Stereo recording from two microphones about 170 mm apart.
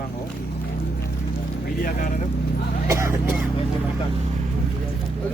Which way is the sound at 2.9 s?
15° right (ahead or behind).